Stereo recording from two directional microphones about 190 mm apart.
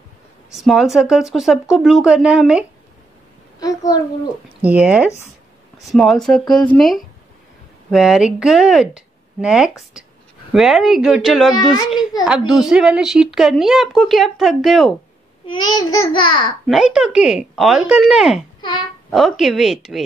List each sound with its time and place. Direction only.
0.5 s speech: centre (ahead or behind)
3.5 s a sound: 20° left (ahead or behind)
4.6 s speech: 5° right (ahead or behind)
15.4 s a child's voice: 20° left (ahead or behind)
16.6 s speech: centre (ahead or behind)